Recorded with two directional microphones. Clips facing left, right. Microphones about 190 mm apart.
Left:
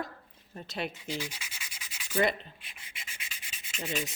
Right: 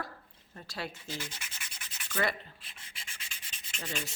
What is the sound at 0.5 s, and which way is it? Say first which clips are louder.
Rub: left 4 dB; 20° left (ahead or behind).